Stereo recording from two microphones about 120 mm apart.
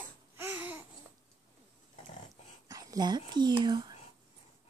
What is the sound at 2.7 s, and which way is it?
Whispering, 30° right (ahead or behind).